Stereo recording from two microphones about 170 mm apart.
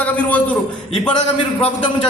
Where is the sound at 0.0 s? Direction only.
10° left (ahead or behind).